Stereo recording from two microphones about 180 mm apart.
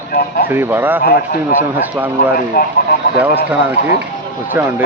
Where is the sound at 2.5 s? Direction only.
55° left (ahead or behind).